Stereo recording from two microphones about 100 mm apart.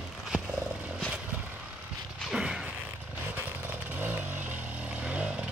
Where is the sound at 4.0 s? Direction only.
20° right (ahead or behind).